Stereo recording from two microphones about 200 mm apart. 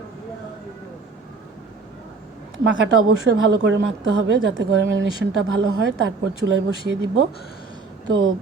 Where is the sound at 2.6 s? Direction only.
70° right (ahead or behind).